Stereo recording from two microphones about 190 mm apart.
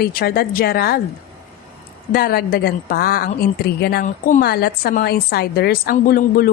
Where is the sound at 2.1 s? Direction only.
50° left (ahead or behind).